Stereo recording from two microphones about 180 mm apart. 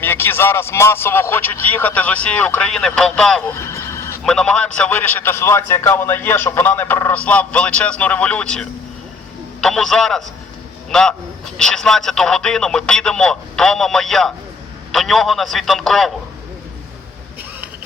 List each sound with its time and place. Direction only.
0.0 s a man's voice: 10° left (ahead or behind)
3.5 s neigh: 15° left (ahead or behind)
4.2 s a man's voice: 5° left (ahead or behind)